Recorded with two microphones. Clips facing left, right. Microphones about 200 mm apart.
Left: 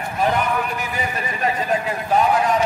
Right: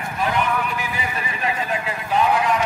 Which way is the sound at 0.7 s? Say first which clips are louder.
Left 2 dB; 45° left (ahead or behind).